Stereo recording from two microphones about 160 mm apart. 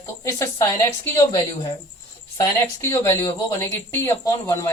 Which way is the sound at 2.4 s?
20° left (ahead or behind).